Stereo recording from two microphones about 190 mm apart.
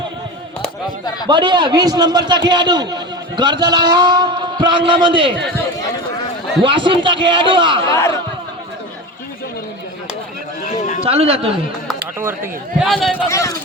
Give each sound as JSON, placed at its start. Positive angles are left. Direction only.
{"t": 1.3, "sound": "a man's voice", "side_deg": -25}
{"t": 6.6, "sound": "a man's voice", "side_deg": -25}
{"t": 7.9, "sound": "speech", "side_deg": 15}
{"t": 10.6, "sound": "run", "side_deg": 45}
{"t": 11.0, "sound": "a man's voice", "side_deg": -30}
{"t": 12.8, "sound": "a man's voice", "side_deg": 0}
{"t": 13.2, "sound": "speech", "side_deg": 15}